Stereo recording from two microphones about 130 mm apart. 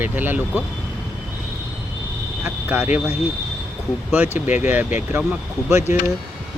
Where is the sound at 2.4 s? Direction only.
15° right (ahead or behind).